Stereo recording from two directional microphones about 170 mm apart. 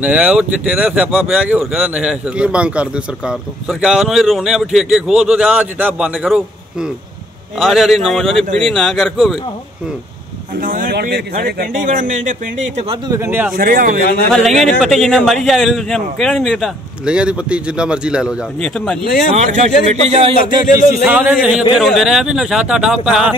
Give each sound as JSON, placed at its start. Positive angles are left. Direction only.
{"t": 0.0, "sound": "speech", "side_deg": -5}
{"t": 10.6, "sound": "speech", "side_deg": -55}
{"t": 13.1, "sound": "speech", "side_deg": -15}
{"t": 13.6, "sound": "speech", "side_deg": -60}
{"t": 14.3, "sound": "speech", "side_deg": 0}
{"t": 19.3, "sound": "speech", "side_deg": -40}
{"t": 21.0, "sound": "speech", "side_deg": -5}